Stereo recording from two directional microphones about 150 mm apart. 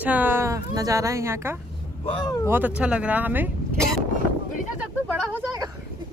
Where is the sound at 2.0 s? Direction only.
25° left (ahead or behind).